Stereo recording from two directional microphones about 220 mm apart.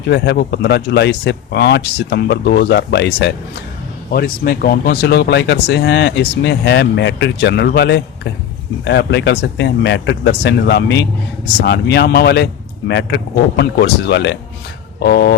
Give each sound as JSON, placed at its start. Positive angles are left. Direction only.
{"t": 0.1, "sound": "speech", "side_deg": 50}